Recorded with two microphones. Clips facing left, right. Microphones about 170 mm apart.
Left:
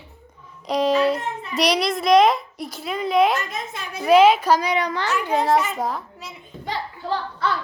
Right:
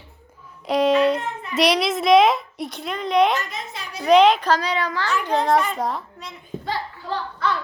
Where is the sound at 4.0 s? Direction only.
5° left (ahead or behind).